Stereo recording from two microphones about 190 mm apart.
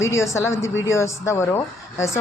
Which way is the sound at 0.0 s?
15° left (ahead or behind).